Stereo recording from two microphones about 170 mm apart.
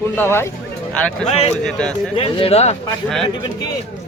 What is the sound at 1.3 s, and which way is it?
Speech, 40° left (ahead or behind).